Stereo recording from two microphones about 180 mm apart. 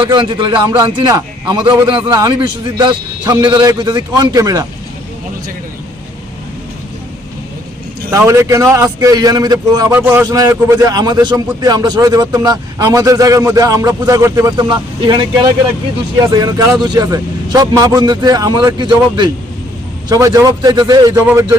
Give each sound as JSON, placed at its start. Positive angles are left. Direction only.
{"t": 0.0, "sound": "a man's voice", "side_deg": -25}
{"t": 8.3, "sound": "a man's voice", "side_deg": -15}
{"t": 16.3, "sound": "a man's voice", "side_deg": -20}